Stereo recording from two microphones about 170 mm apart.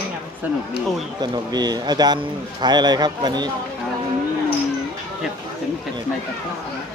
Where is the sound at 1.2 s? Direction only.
25° right (ahead or behind).